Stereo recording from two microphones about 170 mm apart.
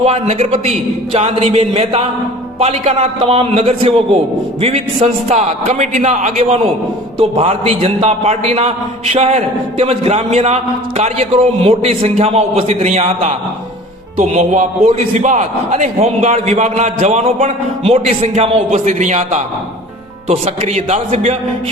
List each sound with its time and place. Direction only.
0.0 s a man's voice: 40° right (ahead or behind)
7.2 s a man's voice: 35° right (ahead or behind)